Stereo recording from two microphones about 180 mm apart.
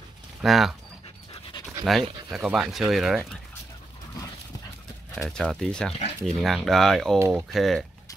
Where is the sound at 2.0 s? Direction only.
25° right (ahead or behind).